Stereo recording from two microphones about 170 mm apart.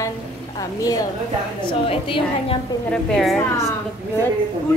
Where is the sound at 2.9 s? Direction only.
5° left (ahead or behind).